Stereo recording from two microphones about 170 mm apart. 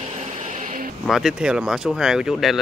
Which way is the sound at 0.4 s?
45° right (ahead or behind).